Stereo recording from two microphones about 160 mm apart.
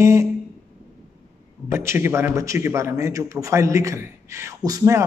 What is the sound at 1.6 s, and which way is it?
A man's voice, 15° right (ahead or behind).